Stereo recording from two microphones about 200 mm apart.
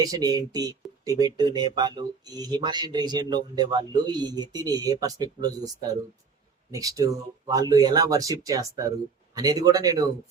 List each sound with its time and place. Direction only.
0.0 s speech: 20° right (ahead or behind)
6.7 s speech: 15° right (ahead or behind)